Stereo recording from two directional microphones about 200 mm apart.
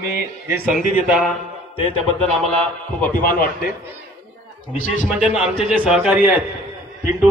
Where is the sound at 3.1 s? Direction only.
45° left (ahead or behind).